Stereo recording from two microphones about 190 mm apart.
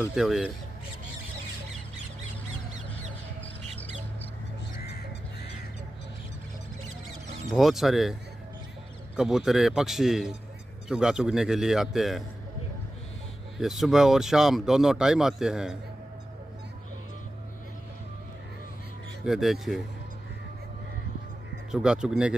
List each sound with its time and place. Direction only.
0.1 s speech: centre (ahead or behind)
7.5 s speech: centre (ahead or behind)
13.6 s speech: centre (ahead or behind)
19.2 s speech: centre (ahead or behind)
21.7 s speech: 5° right (ahead or behind)